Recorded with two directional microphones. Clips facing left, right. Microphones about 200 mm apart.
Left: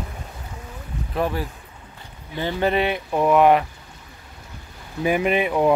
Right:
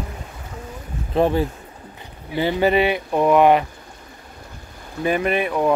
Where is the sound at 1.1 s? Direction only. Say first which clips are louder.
Right 6 dB; 25° right (ahead or behind).